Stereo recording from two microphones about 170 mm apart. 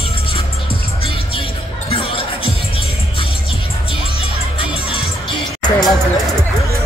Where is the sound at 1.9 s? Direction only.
30° left (ahead or behind).